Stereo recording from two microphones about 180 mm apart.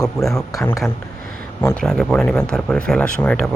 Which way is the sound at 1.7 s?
Centre (ahead or behind).